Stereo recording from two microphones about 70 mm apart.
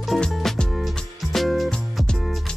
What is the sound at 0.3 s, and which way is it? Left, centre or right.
Music, centre.